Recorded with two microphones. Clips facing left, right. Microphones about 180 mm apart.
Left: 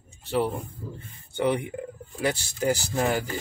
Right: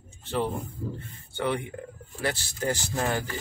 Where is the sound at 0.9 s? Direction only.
15° left (ahead or behind).